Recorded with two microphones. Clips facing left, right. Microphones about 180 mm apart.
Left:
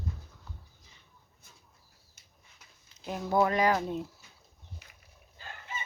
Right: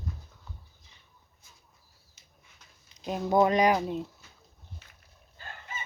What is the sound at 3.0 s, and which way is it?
Speech, 20° right (ahead or behind).